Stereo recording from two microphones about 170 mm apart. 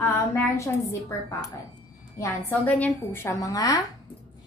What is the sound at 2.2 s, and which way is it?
Speech, 10° left (ahead or behind).